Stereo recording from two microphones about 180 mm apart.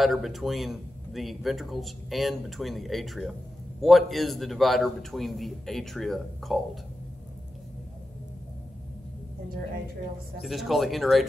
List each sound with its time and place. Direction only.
0.0 s speech: centre (ahead or behind)
10.4 s speech: centre (ahead or behind)